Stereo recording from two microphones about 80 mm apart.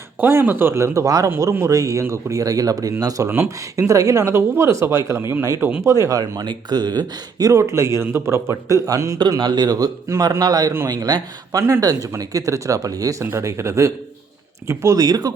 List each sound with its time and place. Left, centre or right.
0.2 s speech: right
3.2 s speech: right
3.8 s speech: right
4.3 s speech: right
5.5 s speech: centre
5.8 s speech: right
9.4 s speech: right
11.6 s speech: right